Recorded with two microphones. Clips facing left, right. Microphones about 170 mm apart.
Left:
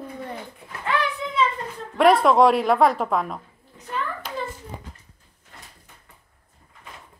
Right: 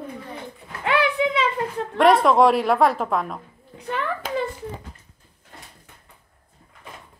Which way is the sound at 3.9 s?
75° right (ahead or behind).